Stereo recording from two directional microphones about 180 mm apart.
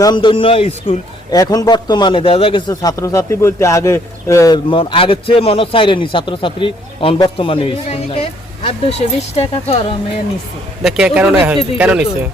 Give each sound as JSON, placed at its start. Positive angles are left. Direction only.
{"t": 0.0, "sound": "a man's voice", "side_deg": 25}
{"t": 1.3, "sound": "a man's voice", "side_deg": 20}
{"t": 10.8, "sound": "a man's voice", "side_deg": -5}